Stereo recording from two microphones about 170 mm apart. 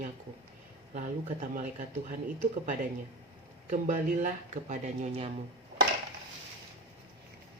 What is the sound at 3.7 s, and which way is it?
Speech, 50° right (ahead or behind).